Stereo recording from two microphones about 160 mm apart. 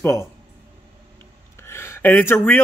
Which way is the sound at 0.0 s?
15° left (ahead or behind).